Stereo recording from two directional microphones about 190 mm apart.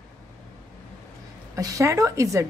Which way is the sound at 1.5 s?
15° right (ahead or behind).